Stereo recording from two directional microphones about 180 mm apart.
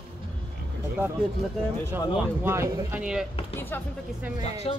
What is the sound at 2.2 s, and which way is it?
Speech, 15° right (ahead or behind).